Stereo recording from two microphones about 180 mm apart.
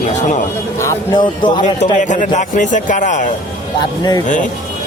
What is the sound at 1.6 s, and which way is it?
Speech, 40° left (ahead or behind).